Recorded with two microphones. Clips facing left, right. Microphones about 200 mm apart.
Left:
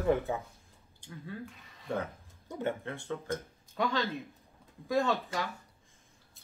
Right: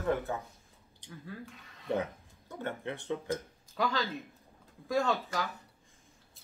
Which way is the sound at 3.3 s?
Centre (ahead or behind).